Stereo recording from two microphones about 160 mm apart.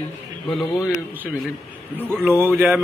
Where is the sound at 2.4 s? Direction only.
10° right (ahead or behind).